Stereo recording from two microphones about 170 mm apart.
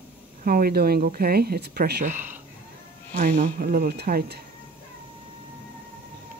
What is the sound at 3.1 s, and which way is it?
Speech, 55° right (ahead or behind).